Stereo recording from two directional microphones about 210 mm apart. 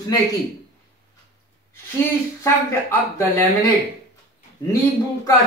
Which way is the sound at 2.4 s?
10° left (ahead or behind).